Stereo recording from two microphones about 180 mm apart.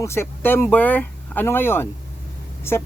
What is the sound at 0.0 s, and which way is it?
Speech, 15° left (ahead or behind).